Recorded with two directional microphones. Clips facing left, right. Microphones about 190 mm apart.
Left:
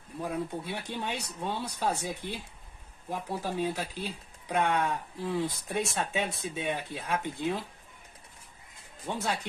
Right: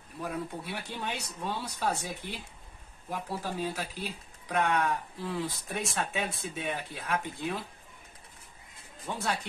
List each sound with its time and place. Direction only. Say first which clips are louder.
0.2 s speech: left 2 dB; 20° left (ahead or behind)
9.0 s speech: left 1 dB; 20° left (ahead or behind)